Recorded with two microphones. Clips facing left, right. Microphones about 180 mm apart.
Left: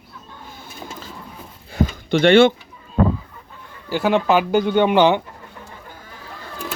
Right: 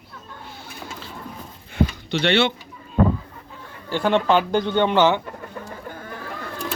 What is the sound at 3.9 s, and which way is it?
A man's voice, 5° left (ahead or behind).